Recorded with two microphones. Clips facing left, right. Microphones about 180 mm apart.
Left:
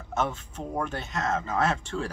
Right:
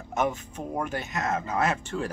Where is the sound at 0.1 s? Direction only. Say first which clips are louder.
Right 2 dB; 10° right (ahead or behind).